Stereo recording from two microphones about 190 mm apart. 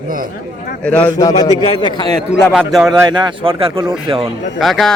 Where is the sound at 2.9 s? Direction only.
20° right (ahead or behind).